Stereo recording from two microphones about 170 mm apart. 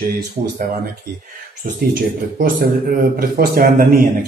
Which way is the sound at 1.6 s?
55° right (ahead or behind).